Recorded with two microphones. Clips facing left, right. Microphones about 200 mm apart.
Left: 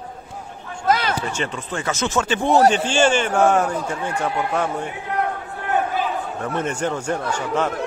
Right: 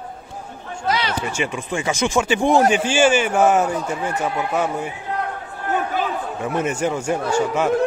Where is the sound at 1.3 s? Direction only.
10° right (ahead or behind).